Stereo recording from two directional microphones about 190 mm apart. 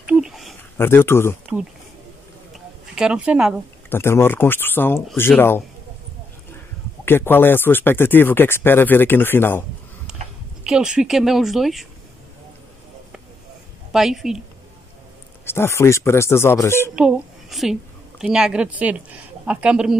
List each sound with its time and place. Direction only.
0.0 s a sound: 5° right (ahead or behind)
0.7 s speech: 10° left (ahead or behind)
2.5 s a sound: 5° right (ahead or behind)
3.9 s speech: 10° left (ahead or behind)
7.1 s speech: 10° left (ahead or behind)
10.6 s a woman's voice: 5° right (ahead or behind)
13.9 s a woman's voice: centre (ahead or behind)
15.4 s speech: 15° left (ahead or behind)
16.9 s a woman's voice: centre (ahead or behind)